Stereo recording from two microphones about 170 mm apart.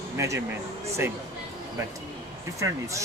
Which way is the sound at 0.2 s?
20° right (ahead or behind).